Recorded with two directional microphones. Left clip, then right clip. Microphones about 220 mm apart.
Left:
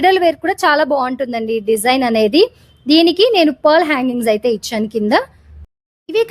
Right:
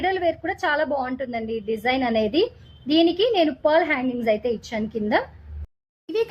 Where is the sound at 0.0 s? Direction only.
50° left (ahead or behind).